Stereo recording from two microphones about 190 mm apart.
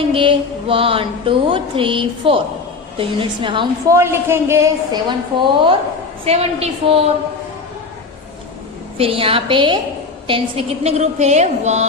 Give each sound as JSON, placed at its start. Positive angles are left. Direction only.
{"t": 0.1, "sound": "music", "side_deg": -30}
{"t": 3.9, "sound": "a woman's voice", "side_deg": -15}
{"t": 8.9, "sound": "music", "side_deg": -30}
{"t": 10.2, "sound": "a woman's voice", "side_deg": -25}